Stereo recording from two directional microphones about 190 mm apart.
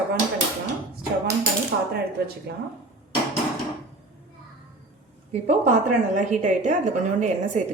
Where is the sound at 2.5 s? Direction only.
55° right (ahead or behind).